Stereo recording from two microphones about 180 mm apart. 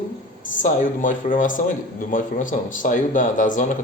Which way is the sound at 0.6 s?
45° left (ahead or behind).